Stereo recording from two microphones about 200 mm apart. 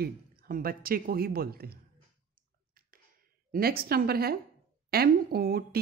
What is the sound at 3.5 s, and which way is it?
A woman's voice, 50° right (ahead or behind).